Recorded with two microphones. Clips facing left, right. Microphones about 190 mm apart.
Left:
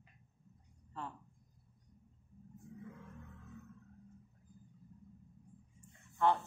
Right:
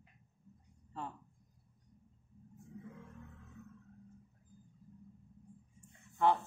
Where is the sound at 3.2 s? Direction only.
Centre (ahead or behind).